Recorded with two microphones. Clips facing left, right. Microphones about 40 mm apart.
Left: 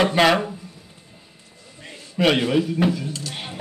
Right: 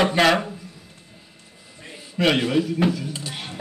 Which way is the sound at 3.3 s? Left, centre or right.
Centre.